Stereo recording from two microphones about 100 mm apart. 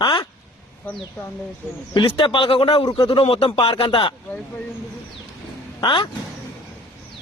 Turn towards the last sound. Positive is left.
turn(degrees=55)  # may be behind; listen again after turning